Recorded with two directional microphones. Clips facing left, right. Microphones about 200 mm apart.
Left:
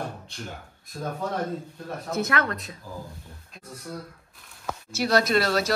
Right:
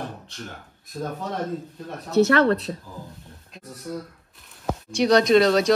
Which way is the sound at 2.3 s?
35° right (ahead or behind).